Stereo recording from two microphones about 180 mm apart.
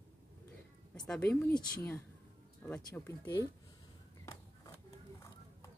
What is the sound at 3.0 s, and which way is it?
Speech, 15° left (ahead or behind).